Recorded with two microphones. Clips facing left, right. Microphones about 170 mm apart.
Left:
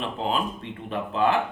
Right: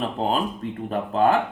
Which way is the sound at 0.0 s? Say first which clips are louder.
Right 3 dB; 40° right (ahead or behind).